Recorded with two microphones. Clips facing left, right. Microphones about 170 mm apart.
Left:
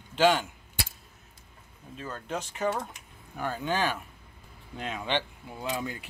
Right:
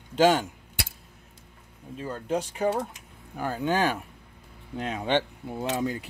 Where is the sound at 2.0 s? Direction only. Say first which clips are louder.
Right 6 dB; 15° right (ahead or behind).